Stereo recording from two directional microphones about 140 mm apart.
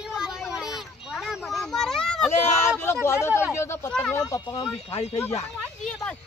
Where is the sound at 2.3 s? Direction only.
15° left (ahead or behind).